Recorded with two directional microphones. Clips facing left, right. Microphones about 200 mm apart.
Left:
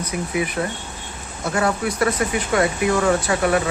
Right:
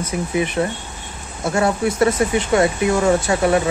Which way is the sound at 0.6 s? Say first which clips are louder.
Right 4 dB; 25° right (ahead or behind).